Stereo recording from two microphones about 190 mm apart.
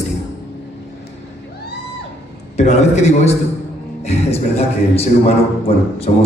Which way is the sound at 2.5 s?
35° left (ahead or behind).